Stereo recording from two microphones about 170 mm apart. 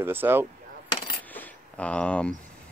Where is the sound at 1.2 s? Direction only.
10° left (ahead or behind).